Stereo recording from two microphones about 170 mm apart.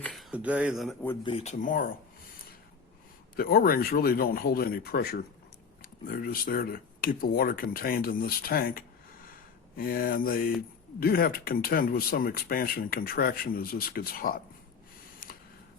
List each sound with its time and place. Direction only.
0.0 s a sound: centre (ahead or behind)
1.2 s speech: 35° left (ahead or behind); by 1.9 s 50° left (ahead or behind)
3.3 s speech: 60° left (ahead or behind)